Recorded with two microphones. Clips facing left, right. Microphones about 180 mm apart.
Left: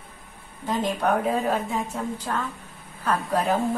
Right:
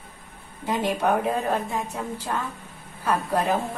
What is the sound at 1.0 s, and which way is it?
A woman's voice, centre (ahead or behind).